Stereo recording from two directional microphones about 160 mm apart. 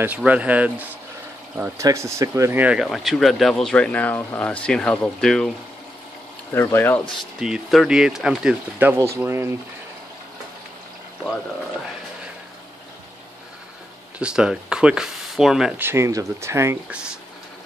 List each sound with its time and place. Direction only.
0.0 s speech: 10° right (ahead or behind)
6.5 s speech: 15° left (ahead or behind)
7.3 s speech: 5° right (ahead or behind)
14.1 s speech: 5° right (ahead or behind)
15.8 s speech: 15° right (ahead or behind)